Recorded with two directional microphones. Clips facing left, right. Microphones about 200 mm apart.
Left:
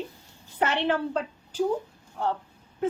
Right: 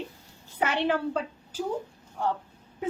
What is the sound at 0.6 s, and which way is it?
Speech, 10° right (ahead or behind).